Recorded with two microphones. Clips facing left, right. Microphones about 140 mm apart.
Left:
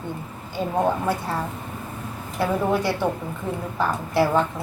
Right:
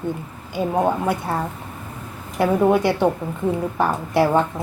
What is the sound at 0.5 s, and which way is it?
Speech, 15° right (ahead or behind).